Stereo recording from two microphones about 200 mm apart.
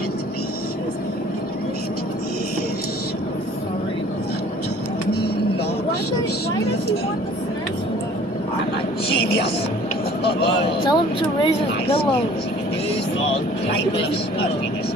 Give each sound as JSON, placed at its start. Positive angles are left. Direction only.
{"t": 10.9, "sound": "speech", "side_deg": 25}